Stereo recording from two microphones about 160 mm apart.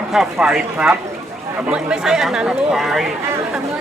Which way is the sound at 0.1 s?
5° right (ahead or behind).